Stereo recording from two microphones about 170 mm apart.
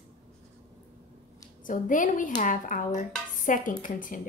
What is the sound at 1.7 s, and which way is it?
Speech, 50° left (ahead or behind).